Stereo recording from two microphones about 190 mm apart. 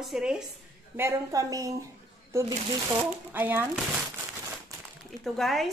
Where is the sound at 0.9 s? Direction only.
15° right (ahead or behind).